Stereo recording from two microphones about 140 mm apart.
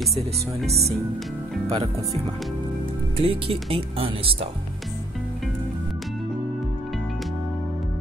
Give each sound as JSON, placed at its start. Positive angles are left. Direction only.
{"t": 1.7, "sound": "speech", "side_deg": -40}